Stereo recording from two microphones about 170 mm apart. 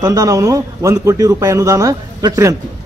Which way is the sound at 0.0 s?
20° right (ahead or behind).